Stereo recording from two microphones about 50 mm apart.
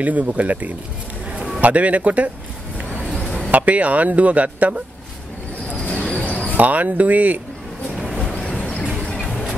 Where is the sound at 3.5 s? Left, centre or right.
Right.